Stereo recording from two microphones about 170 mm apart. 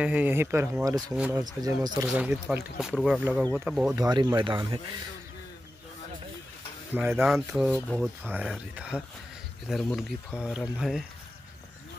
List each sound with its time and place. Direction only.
0.0 s speech: 10° right (ahead or behind)
2.1 s speech: 10° right (ahead or behind)
3.9 s speech: 25° right (ahead or behind)
6.9 s speech: 5° right (ahead or behind)